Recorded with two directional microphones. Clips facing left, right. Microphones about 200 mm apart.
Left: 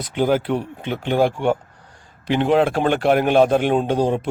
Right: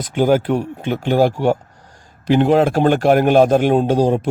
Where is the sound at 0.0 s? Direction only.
45° right (ahead or behind).